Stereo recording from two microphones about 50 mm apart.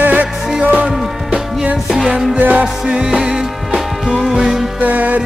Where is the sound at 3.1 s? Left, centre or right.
Centre.